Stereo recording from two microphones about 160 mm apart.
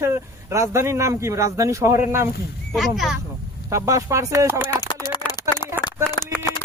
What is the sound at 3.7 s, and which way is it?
Speech, 20° right (ahead or behind).